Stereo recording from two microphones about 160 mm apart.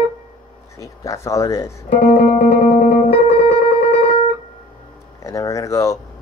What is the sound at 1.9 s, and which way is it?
Speech, 65° left (ahead or behind).